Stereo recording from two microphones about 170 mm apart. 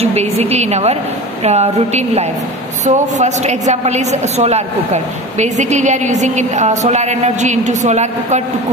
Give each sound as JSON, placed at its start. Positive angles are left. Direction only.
{"t": 0.0, "sound": "a woman's voice", "side_deg": -40}